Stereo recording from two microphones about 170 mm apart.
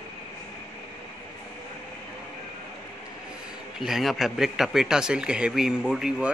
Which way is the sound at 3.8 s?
Centre (ahead or behind).